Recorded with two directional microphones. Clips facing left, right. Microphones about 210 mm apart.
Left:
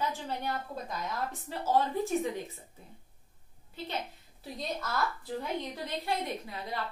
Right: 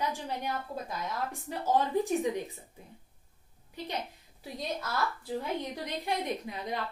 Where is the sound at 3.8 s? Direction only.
15° right (ahead or behind).